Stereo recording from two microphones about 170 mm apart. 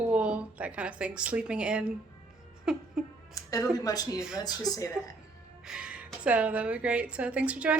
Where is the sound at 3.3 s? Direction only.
20° left (ahead or behind).